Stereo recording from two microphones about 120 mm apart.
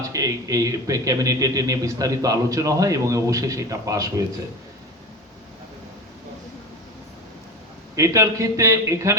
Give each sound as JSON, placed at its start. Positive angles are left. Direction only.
{"t": 0.1, "sound": "speech", "side_deg": -30}
{"t": 7.9, "sound": "speech", "side_deg": -25}